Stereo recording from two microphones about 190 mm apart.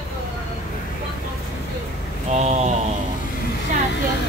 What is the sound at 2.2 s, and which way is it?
Speech, 35° right (ahead or behind).